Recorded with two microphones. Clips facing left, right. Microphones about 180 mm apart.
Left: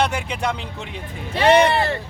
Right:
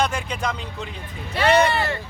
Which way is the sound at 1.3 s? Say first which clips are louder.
Left 3 dB; 30° left (ahead or behind).